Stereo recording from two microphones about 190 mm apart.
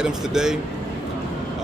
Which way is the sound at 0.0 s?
5° right (ahead or behind).